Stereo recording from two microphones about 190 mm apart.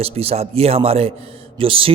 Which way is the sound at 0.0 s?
30° right (ahead or behind).